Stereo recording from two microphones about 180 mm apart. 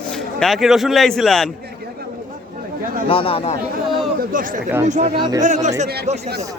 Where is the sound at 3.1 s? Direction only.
30° left (ahead or behind).